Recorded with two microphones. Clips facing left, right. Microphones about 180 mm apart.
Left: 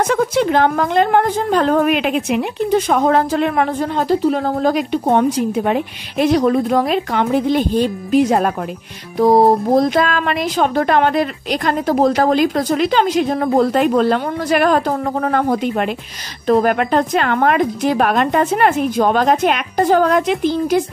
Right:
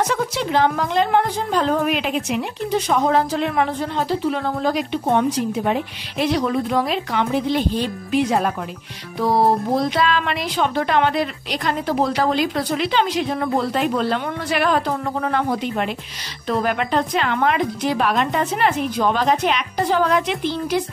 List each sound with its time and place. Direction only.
0.0 s a woman's voice: 50° left (ahead or behind)